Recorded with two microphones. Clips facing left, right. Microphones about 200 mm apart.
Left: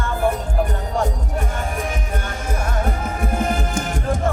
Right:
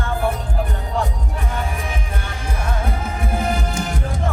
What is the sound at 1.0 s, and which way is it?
Music, 45° left (ahead or behind).